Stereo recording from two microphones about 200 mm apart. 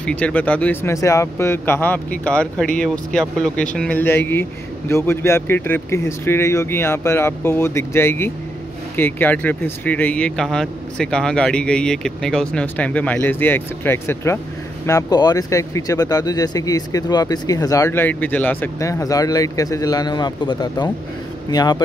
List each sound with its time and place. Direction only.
0.0 s speech: 5° left (ahead or behind)